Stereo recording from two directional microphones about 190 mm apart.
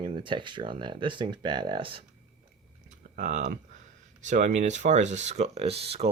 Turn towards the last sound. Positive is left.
turn(degrees=-30)  # may be behind; listen again after turning